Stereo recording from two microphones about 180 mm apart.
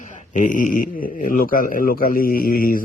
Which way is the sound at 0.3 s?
45° left (ahead or behind).